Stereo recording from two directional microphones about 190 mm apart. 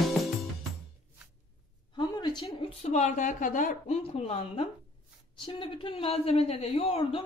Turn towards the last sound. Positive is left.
turn(degrees=30)  # may be behind; listen again after turning